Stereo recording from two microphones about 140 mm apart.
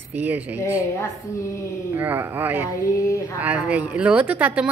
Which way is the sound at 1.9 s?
15° right (ahead or behind).